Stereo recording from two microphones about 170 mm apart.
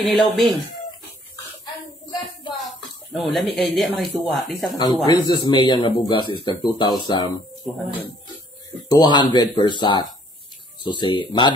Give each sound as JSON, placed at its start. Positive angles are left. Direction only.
{"t": 0.0, "sound": "speech", "side_deg": 0}
{"t": 2.5, "sound": "speech", "side_deg": 0}
{"t": 5.0, "sound": "a man's voice", "side_deg": 25}
{"t": 8.8, "sound": "a man's voice", "side_deg": 25}